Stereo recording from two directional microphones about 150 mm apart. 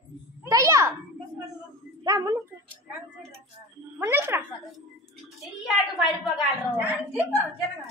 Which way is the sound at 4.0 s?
15° right (ahead or behind).